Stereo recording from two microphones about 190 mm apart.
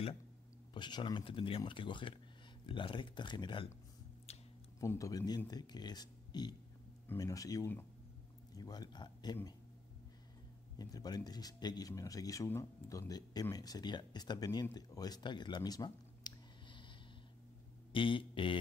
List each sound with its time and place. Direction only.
0.7 s speech: 25° left (ahead or behind)
4.3 s a sound: 35° left (ahead or behind)
4.7 s speech: 15° left (ahead or behind)
10.8 s speech: 20° left (ahead or behind)
17.9 s speech: 25° left (ahead or behind)